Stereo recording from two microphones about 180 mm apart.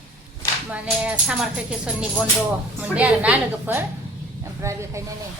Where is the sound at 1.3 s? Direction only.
5° right (ahead or behind).